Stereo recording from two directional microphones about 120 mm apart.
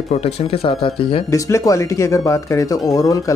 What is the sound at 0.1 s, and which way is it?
Speech, 55° left (ahead or behind).